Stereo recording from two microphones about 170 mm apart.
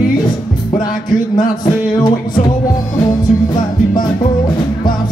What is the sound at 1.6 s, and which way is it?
Music, 25° left (ahead or behind).